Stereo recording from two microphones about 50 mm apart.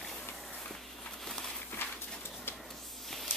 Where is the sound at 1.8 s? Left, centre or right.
Left.